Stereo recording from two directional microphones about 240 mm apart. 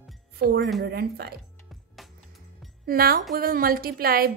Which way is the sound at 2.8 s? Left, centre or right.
Right.